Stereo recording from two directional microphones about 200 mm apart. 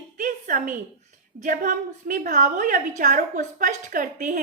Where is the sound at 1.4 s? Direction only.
40° right (ahead or behind).